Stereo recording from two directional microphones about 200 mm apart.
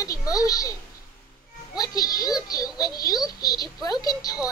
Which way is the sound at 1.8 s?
20° left (ahead or behind).